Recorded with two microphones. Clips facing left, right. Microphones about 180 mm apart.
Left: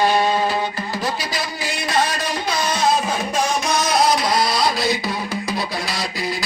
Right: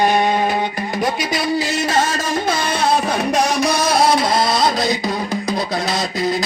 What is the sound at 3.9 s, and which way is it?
Music, 30° right (ahead or behind).